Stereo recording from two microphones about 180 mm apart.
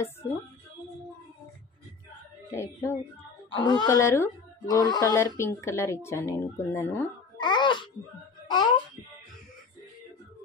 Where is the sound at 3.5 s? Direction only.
25° left (ahead or behind).